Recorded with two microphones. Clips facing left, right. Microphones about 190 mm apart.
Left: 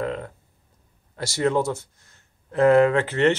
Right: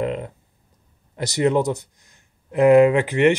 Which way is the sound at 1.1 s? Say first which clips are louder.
Right 3 dB; 20° right (ahead or behind).